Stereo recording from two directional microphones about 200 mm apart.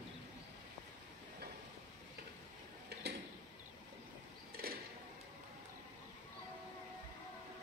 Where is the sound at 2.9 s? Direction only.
55° right (ahead or behind).